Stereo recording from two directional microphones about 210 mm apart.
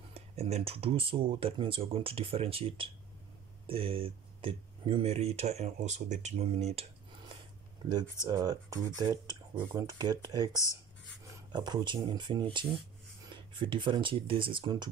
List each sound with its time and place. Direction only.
0.1 s speech: 30° right (ahead or behind)
7.9 s speech: 15° right (ahead or behind)
11.5 s speech: 20° right (ahead or behind)